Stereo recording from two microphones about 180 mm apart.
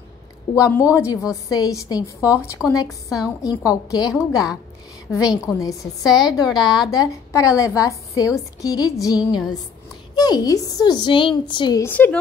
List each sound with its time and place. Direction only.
0.6 s a woman's voice: 15° left (ahead or behind)
11.8 s speech: 10° left (ahead or behind)